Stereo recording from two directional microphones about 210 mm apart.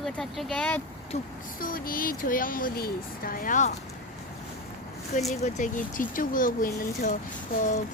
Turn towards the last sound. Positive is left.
turn(degrees=35)  # may be behind; listen again after turning